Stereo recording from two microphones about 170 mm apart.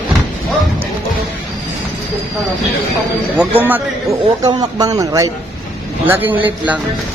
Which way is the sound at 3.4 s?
10° right (ahead or behind).